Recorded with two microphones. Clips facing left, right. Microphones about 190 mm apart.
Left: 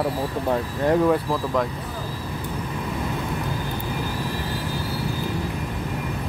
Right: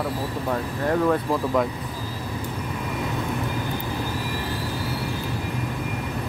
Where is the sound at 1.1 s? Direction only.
Centre (ahead or behind).